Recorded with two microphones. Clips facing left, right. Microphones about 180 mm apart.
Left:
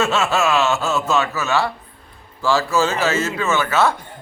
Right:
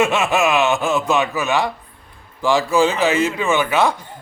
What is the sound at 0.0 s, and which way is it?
A man's voice, 15° right (ahead or behind).